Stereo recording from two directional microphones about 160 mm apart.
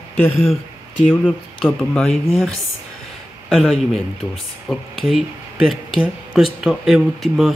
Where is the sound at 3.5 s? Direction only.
Centre (ahead or behind).